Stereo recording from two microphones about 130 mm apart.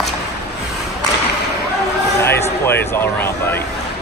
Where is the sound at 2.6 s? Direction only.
20° left (ahead or behind).